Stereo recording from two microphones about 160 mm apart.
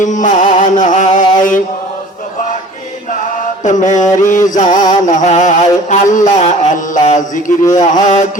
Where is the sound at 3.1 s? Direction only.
55° left (ahead or behind).